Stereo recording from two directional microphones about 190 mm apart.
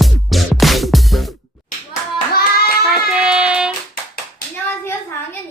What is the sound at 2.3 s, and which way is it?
Child singing, 50° left (ahead or behind).